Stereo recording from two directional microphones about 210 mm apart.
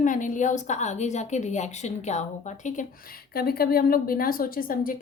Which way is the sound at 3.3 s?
45° left (ahead or behind).